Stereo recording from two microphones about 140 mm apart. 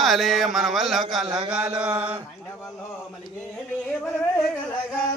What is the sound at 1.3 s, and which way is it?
Mantra, 30° right (ahead or behind).